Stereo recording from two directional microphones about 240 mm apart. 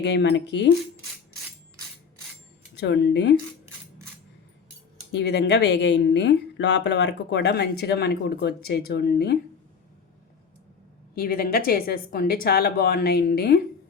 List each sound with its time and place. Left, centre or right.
0.0 s speech: left
2.8 s speech: left
5.1 s speech: left
11.1 s speech: left